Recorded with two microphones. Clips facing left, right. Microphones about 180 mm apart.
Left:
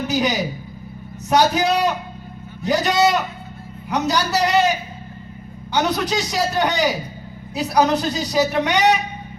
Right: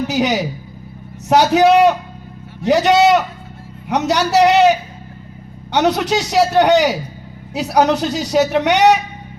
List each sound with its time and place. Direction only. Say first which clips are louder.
0.1 s a woman's voice: right 3 dB; 75° right (ahead or behind)
5.7 s a man's voice: right 5 dB; 75° right (ahead or behind)